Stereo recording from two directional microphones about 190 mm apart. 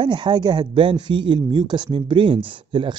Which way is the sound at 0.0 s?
25° right (ahead or behind).